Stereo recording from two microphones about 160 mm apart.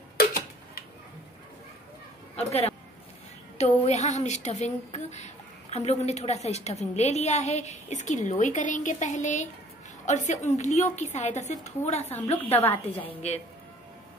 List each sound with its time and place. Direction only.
2.3 s a woman's voice: 40° left (ahead or behind)
12.4 s a woman's voice: 15° left (ahead or behind)
13.2 s a man's voice: 40° left (ahead or behind)